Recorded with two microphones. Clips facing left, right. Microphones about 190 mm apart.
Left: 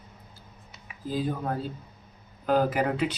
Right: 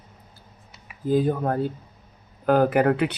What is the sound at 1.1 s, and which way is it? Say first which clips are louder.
Speech: right 8 dB; 55° right (ahead or behind).